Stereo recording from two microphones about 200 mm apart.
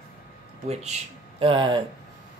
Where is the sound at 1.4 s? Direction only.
25° right (ahead or behind).